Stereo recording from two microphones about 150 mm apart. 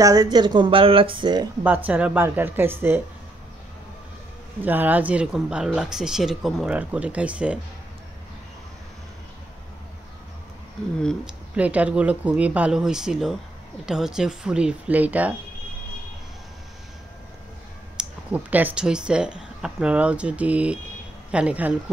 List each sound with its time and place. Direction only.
0.0 s speech: 25° right (ahead or behind)
1.6 s speech: 10° right (ahead or behind)
4.6 s speech: 10° right (ahead or behind)
11.5 s speech: 10° right (ahead or behind)
17.9 s speech: 10° right (ahead or behind)